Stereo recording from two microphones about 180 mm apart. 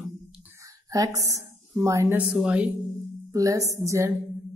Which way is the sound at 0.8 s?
20° right (ahead or behind).